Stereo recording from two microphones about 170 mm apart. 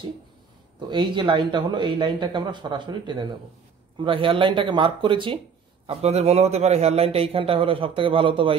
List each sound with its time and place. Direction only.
0.7 s a man's voice: 25° right (ahead or behind)